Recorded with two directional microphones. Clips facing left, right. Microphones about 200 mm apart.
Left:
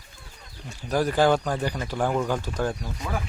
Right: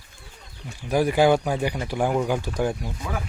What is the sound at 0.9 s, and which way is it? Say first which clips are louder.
Speech: right 2 dB; 10° right (ahead or behind).